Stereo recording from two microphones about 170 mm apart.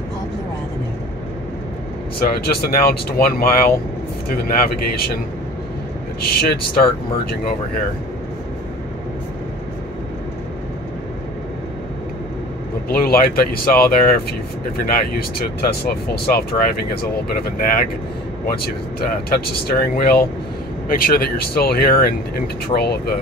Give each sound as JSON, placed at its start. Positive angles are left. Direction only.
{"t": 2.1, "sound": "speech", "side_deg": 65}
{"t": 6.2, "sound": "speech", "side_deg": 65}
{"t": 12.9, "sound": "speech", "side_deg": 60}